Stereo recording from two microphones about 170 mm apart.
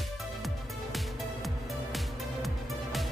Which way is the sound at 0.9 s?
Centre (ahead or behind).